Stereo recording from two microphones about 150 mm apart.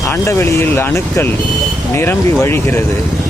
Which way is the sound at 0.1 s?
15° left (ahead or behind).